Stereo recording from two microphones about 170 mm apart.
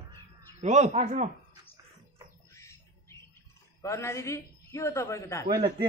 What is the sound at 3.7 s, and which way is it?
A man's voice, 15° left (ahead or behind).